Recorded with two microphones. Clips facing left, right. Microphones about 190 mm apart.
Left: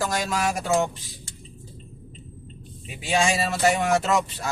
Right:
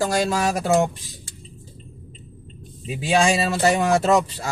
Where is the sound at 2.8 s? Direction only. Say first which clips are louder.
Right 4 dB; 35° right (ahead or behind).